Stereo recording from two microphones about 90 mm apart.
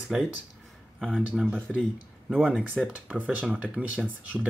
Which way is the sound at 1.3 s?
15° right (ahead or behind).